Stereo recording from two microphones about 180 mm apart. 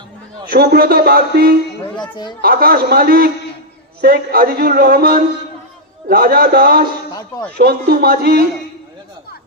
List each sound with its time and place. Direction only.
0.5 s speech: 60° right (ahead or behind)
2.0 s a woman's voice: 25° left (ahead or behind)
2.4 s speech: 55° right (ahead or behind)
7.1 s a sound: 20° left (ahead or behind)
7.5 s speech: 60° right (ahead or behind)